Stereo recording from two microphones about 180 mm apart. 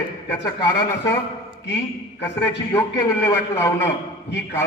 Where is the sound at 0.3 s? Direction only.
15° left (ahead or behind).